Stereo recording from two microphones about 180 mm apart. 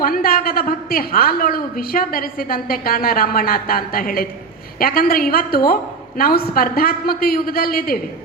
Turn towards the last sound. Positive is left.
turn(degrees=55)  # may be behind; listen again after turning